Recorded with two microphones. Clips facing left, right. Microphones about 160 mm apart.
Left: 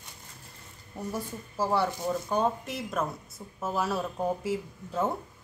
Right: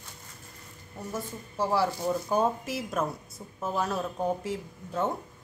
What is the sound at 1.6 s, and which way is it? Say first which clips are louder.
A woman's voice: right 1 dB; centre (ahead or behind).